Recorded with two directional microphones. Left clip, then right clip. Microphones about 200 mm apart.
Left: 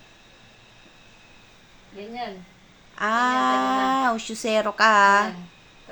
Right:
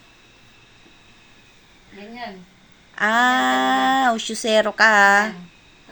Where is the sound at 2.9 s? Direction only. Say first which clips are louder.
Right 4 dB; 20° right (ahead or behind).